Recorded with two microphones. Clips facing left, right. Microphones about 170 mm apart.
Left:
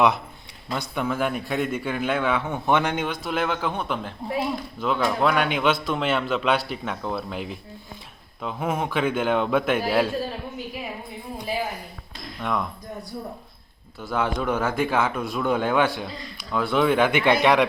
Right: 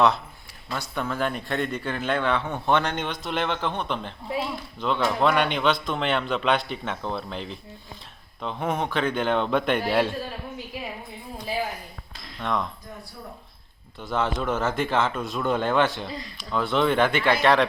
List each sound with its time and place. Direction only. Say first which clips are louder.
0.7 s a man's voice: left 3 dB; 15° left (ahead or behind)
12.4 s a man's voice: even; 5° left (ahead or behind)
14.0 s a man's voice: left 1 dB; 10° left (ahead or behind)